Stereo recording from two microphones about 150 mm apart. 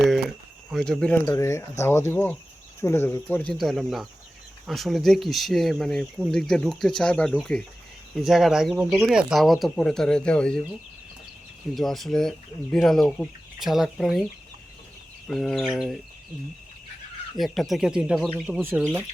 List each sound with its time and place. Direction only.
0.7 s speech: 5° left (ahead or behind)
1.3 s speech: 20° left (ahead or behind)
11.7 s speech: centre (ahead or behind)
15.3 s speech: 5° left (ahead or behind)
17.3 s speech: centre (ahead or behind)